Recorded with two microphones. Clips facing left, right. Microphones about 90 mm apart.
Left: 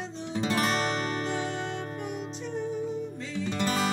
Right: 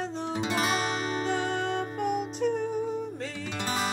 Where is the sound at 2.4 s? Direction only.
50° right (ahead or behind).